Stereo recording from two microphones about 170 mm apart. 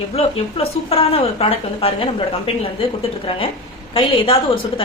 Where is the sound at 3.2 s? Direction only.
30° left (ahead or behind).